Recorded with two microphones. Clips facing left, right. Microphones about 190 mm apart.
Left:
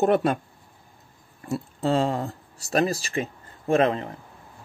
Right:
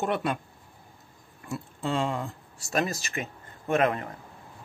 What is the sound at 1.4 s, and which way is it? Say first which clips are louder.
Speech: left 6 dB; 40° left (ahead or behind).